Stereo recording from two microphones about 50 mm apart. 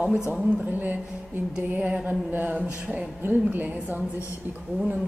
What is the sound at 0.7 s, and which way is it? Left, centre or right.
Speech, right.